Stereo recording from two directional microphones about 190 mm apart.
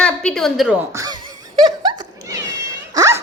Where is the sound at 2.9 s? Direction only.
15° right (ahead or behind).